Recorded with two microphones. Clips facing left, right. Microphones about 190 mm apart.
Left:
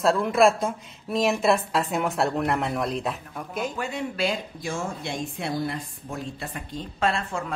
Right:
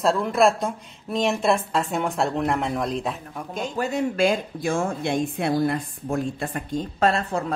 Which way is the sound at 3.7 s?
40° right (ahead or behind).